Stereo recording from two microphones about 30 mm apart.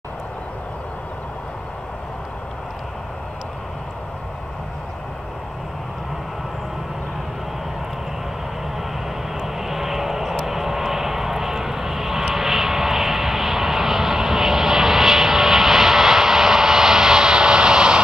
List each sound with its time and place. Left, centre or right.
9.6 s vehicle: centre; by 18.0 s right